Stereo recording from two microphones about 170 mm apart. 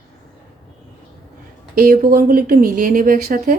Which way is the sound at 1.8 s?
60° right (ahead or behind).